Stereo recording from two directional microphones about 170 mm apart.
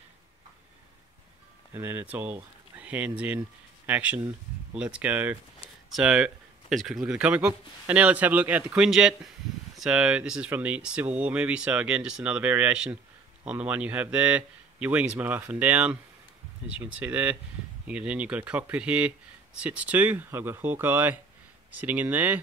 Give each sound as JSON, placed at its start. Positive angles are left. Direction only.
{"t": 1.7, "sound": "speech", "side_deg": -10}